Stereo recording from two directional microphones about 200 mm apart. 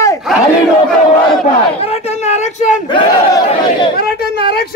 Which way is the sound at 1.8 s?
30° left (ahead or behind).